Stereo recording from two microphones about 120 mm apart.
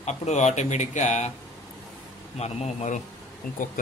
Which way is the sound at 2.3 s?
65° left (ahead or behind).